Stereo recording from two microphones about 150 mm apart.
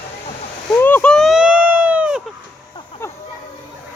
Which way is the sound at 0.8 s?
10° left (ahead or behind).